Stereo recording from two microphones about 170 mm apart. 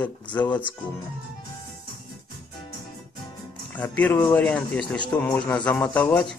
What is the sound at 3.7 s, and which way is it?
Speech, 10° left (ahead or behind).